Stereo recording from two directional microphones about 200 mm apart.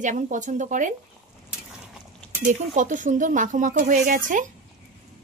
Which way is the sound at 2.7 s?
40° right (ahead or behind).